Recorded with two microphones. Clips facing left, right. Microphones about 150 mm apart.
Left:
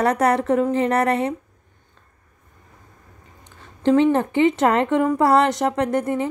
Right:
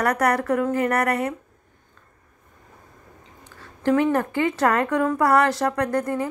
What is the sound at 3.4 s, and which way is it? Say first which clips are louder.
A woman's voice: left 4 dB; 20° left (ahead or behind).